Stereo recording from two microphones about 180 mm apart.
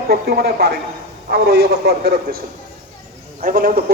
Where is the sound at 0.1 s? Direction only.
60° right (ahead or behind).